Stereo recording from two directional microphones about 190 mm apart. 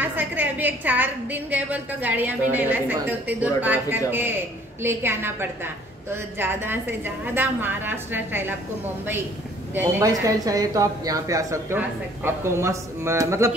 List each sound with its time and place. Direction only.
0.0 s a woman's voice: 10° right (ahead or behind)
9.8 s a woman's voice: 15° right (ahead or behind)